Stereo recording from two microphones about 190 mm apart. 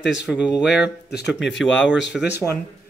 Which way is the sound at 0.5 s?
65° left (ahead or behind).